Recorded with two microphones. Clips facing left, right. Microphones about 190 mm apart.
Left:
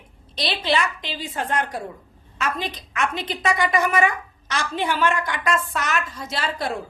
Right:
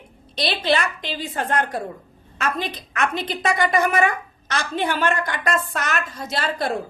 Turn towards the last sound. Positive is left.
turn(degrees=-55)  # may be behind; listen again after turning